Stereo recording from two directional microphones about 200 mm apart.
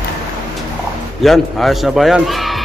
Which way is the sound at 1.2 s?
Centre (ahead or behind).